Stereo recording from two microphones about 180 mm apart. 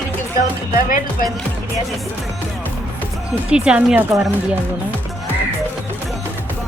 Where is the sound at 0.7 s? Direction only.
50° left (ahead or behind).